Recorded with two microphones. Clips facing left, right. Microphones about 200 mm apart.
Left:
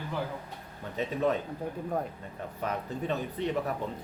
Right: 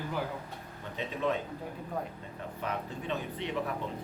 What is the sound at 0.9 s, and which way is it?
Speech, 40° left (ahead or behind).